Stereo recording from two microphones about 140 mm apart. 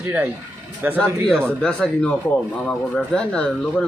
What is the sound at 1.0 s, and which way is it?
Speech, 5° left (ahead or behind).